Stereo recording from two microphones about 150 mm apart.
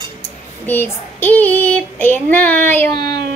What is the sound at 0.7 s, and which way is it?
Child singing, 15° left (ahead or behind).